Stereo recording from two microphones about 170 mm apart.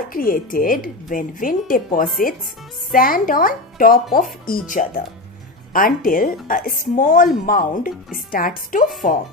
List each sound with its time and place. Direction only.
0.1 s speech: 55° left (ahead or behind)